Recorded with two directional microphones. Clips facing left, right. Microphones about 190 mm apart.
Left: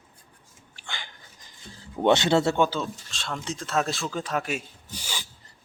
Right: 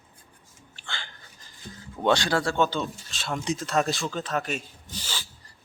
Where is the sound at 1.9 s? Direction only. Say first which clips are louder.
Left 3 dB; 20° left (ahead or behind).